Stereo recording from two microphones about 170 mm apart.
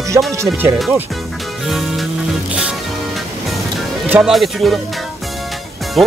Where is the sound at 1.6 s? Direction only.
Centre (ahead or behind).